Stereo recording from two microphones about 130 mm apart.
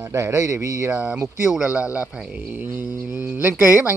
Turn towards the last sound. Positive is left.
turn(degrees=-15)  # may be behind; listen again after turning